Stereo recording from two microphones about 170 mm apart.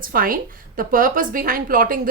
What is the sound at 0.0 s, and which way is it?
A woman's voice, 55° right (ahead or behind).